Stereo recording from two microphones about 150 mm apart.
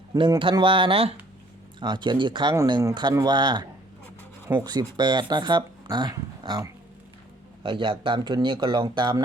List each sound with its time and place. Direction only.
0.1 s speech: 30° right (ahead or behind)